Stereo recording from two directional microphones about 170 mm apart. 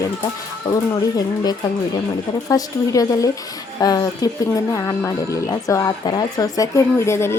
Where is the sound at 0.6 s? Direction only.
20° left (ahead or behind).